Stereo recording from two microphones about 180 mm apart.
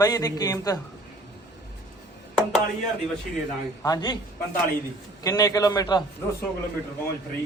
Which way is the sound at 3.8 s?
25° left (ahead or behind).